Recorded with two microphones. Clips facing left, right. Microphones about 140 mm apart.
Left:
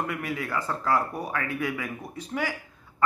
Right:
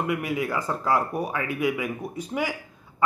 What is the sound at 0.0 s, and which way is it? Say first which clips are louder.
Speech: right 5 dB; 15° right (ahead or behind).